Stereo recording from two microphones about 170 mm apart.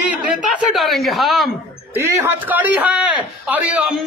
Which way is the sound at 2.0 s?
15° right (ahead or behind).